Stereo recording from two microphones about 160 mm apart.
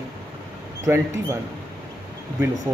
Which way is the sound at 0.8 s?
20° right (ahead or behind).